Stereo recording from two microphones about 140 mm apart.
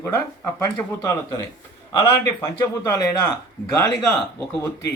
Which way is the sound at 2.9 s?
25° left (ahead or behind).